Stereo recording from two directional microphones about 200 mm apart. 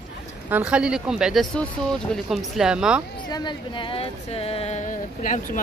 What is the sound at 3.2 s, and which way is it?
Speech, 20° left (ahead or behind).